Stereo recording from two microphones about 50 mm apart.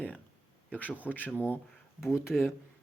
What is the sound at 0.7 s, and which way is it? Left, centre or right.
Speech, left.